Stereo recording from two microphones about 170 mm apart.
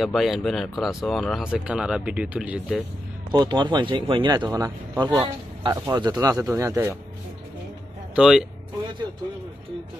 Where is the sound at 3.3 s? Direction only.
25° right (ahead or behind).